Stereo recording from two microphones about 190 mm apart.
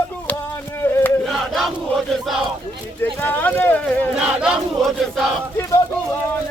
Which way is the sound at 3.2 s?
10° left (ahead or behind).